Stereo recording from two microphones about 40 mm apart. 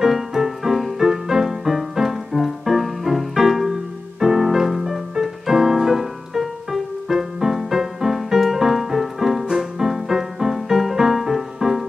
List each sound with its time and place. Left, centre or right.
0.0 s music: centre